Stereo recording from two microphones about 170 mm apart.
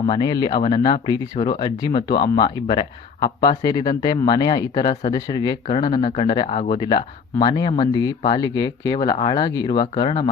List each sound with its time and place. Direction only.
0.1 s speech: 25° left (ahead or behind)